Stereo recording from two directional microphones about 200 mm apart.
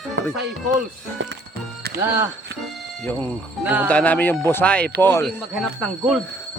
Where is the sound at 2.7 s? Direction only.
Centre (ahead or behind).